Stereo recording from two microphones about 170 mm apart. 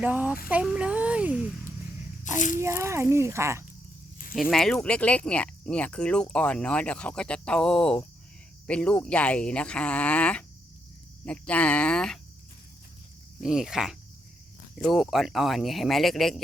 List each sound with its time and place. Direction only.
0.0 s speech: 10° right (ahead or behind)
2.2 s a child's voice: 45° left (ahead or behind)
2.6 s speech: 15° right (ahead or behind)
4.5 s speech: 5° left (ahead or behind)
13.4 s speech: 5° right (ahead or behind)